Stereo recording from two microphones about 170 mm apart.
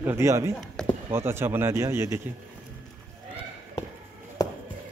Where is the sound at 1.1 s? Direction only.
15° right (ahead or behind).